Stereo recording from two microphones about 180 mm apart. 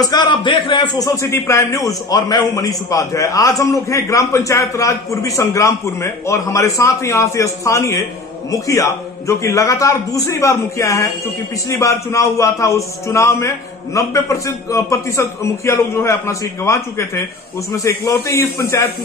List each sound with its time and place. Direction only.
0.0 s a man's voice: 25° left (ahead or behind)